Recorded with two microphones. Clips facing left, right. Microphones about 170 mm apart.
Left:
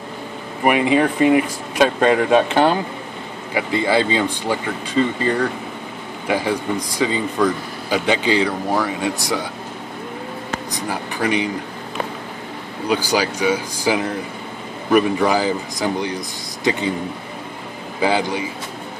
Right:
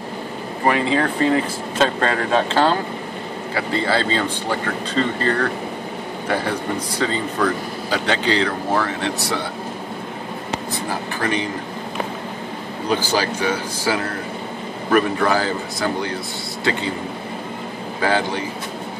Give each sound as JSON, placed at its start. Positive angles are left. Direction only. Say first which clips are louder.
{"t": 0.7, "sound": "speech", "louder": "left 3 dB", "side_deg": 15}
{"t": 10.7, "sound": "speech", "louder": "even", "side_deg": 15}
{"t": 12.8, "sound": "speech", "louder": "left 1 dB", "side_deg": 15}
{"t": 18.0, "sound": "speech", "louder": "left 1 dB", "side_deg": 15}